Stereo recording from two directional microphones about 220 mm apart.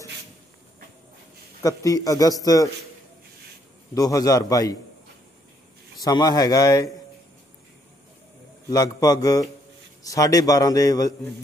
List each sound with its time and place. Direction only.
1.6 s a man's voice: 15° left (ahead or behind)
3.9 s a man's voice: 15° left (ahead or behind)
6.0 s a man's voice: 15° left (ahead or behind)
8.6 s a man's voice: 15° left (ahead or behind)